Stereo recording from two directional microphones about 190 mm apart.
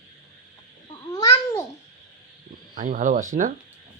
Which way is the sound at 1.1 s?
20° left (ahead or behind).